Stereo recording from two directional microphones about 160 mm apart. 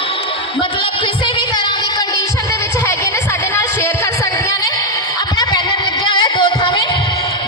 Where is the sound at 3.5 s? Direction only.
15° left (ahead or behind).